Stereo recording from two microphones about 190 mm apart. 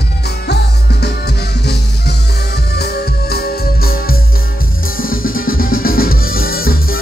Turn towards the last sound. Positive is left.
turn(degrees=50)  # may be behind; listen again after turning